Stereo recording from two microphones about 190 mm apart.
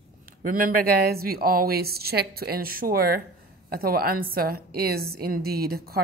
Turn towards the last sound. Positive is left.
turn(degrees=-55)  # may be behind; listen again after turning